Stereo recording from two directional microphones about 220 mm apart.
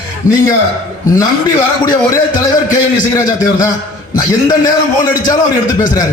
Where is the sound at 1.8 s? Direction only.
20° left (ahead or behind).